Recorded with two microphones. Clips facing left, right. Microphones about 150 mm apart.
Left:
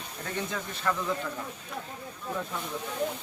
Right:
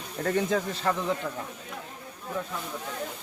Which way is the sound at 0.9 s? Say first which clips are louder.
Right 1 dB; 30° right (ahead or behind).